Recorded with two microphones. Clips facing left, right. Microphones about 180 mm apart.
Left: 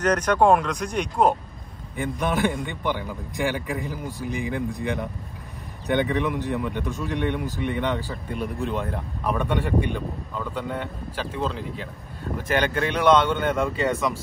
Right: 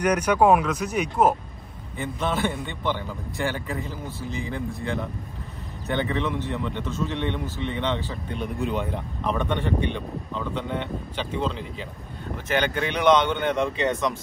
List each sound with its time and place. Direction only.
0.0 s speech: 10° right (ahead or behind)
2.0 s a man's voice: 15° left (ahead or behind)
6.1 s a man's voice: 15° left (ahead or behind)